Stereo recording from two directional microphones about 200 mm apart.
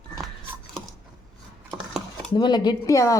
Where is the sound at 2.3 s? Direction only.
20° left (ahead or behind).